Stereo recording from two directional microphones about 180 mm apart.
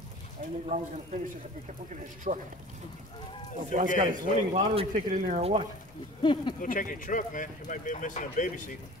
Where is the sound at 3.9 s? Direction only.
45° right (ahead or behind).